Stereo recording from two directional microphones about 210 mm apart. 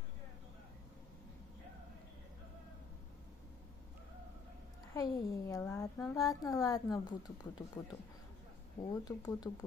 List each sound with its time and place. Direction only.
4.9 s a woman's voice: 15° left (ahead or behind)
8.8 s speech: 15° left (ahead or behind)